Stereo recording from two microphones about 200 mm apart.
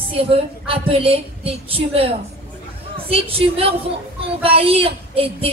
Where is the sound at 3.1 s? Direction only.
30° right (ahead or behind).